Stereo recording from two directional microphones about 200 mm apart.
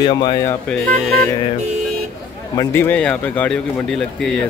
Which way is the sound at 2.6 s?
10° left (ahead or behind).